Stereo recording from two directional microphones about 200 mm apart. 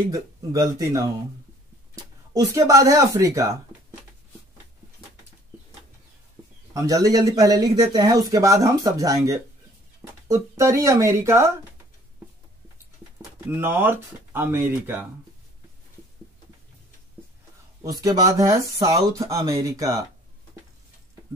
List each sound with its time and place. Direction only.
0.1 s speech: 15° right (ahead or behind)
2.3 s speech: 15° right (ahead or behind)
6.7 s speech: 15° right (ahead or behind)
13.5 s speech: 10° right (ahead or behind)
17.8 s speech: 20° right (ahead or behind)